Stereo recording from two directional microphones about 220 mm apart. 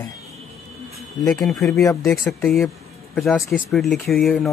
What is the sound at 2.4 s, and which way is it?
Speech, centre (ahead or behind).